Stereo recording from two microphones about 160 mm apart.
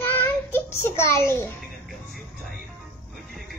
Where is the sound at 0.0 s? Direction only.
15° left (ahead or behind).